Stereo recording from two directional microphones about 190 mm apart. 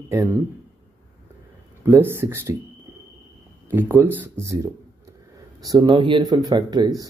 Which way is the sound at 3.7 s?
10° right (ahead or behind).